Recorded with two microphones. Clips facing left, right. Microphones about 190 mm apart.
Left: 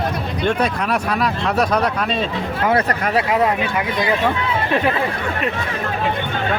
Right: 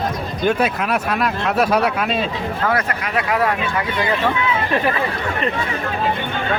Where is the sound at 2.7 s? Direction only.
35° left (ahead or behind).